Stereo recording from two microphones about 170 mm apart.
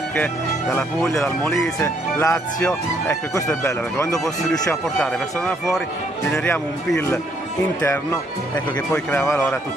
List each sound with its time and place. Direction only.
0.1 s speech: 10° left (ahead or behind)
4.1 s speech: 5° left (ahead or behind)
6.3 s speech: 5° left (ahead or behind)